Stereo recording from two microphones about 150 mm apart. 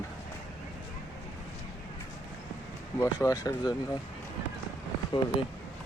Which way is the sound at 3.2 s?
20° left (ahead or behind).